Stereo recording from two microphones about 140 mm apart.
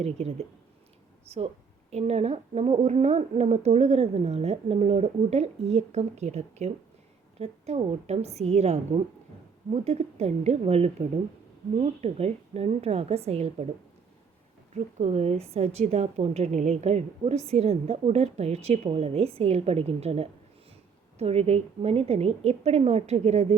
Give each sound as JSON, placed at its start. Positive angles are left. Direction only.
{"t": 0.0, "sound": "a woman's voice", "side_deg": -45}
{"t": 14.7, "sound": "a woman's voice", "side_deg": -50}